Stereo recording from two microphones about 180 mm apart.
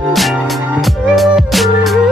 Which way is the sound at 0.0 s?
Centre (ahead or behind).